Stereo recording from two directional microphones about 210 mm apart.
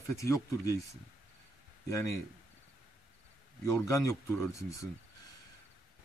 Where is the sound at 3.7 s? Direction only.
15° left (ahead or behind).